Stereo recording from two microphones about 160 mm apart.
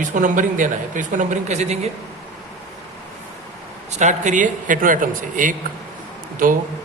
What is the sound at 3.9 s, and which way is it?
A man's voice, 50° right (ahead or behind).